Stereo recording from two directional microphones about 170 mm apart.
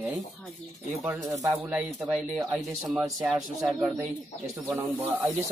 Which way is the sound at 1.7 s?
5° right (ahead or behind).